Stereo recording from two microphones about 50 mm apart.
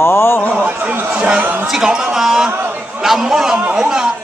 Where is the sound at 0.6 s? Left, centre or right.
Right.